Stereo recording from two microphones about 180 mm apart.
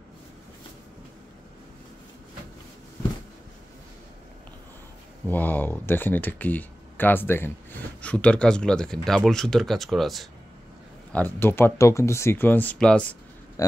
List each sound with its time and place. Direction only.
5.2 s speech: 10° left (ahead or behind)
11.1 s speech: 10° left (ahead or behind)
13.6 s a sound: 20° left (ahead or behind)